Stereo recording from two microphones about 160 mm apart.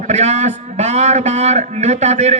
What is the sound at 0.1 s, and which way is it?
A man's voice, 45° right (ahead or behind).